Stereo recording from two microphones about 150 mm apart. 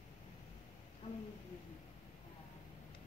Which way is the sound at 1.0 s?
45° left (ahead or behind).